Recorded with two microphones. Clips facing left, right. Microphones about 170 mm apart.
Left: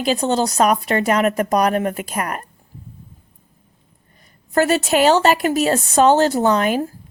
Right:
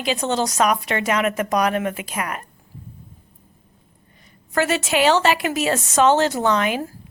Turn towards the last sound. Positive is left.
turn(degrees=40)  # may be behind; listen again after turning